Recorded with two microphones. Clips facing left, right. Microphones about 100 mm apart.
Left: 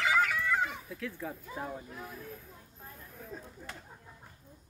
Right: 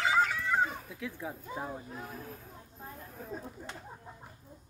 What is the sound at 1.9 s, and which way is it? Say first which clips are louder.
Speech: right 1 dB; 40° right (ahead or behind).